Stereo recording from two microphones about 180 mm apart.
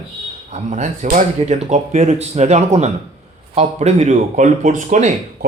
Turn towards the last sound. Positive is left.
turn(degrees=-40)  # may be behind; listen again after turning